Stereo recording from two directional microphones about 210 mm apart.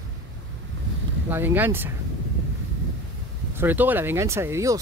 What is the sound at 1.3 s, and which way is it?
Speech, 10° right (ahead or behind).